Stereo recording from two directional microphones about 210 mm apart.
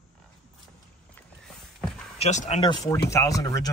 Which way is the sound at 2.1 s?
30° left (ahead or behind).